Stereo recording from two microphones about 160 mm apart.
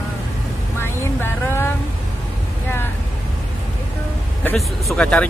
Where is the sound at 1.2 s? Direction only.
15° left (ahead or behind).